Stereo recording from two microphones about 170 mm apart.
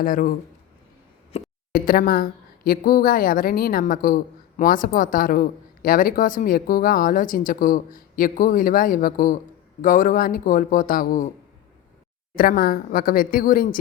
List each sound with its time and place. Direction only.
0.0 s a woman's voice: 55° left (ahead or behind)
1.3 s a sound: 40° left (ahead or behind)
1.7 s a woman's voice: 55° left (ahead or behind)
12.4 s a woman's voice: 60° left (ahead or behind)